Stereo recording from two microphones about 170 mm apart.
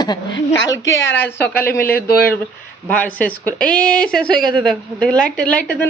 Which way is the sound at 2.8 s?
10° left (ahead or behind).